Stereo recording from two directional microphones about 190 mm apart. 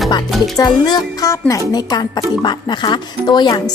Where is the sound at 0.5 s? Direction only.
20° left (ahead or behind).